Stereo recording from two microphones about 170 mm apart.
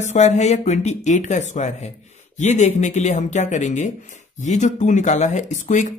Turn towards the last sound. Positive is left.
turn(degrees=45)  # may be behind; listen again after turning